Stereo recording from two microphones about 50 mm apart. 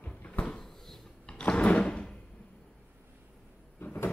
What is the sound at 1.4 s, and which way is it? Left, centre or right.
Drawer open or close, left.